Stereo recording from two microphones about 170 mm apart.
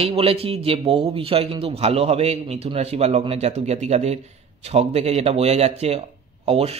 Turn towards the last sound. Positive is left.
turn(degrees=-35)  # may be behind; listen again after turning